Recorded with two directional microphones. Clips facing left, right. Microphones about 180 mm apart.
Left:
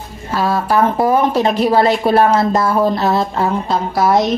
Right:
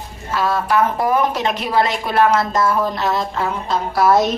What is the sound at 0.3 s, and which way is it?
A woman's voice, 35° left (ahead or behind).